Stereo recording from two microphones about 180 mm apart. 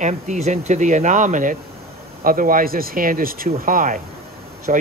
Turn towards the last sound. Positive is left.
turn(degrees=-45)  # may be behind; listen again after turning